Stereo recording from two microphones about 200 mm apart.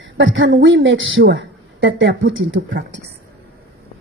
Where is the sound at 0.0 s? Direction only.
70° right (ahead or behind).